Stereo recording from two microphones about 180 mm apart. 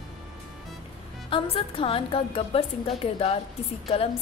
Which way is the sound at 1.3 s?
30° left (ahead or behind).